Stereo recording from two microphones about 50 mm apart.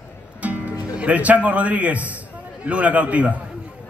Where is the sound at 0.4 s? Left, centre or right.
Right.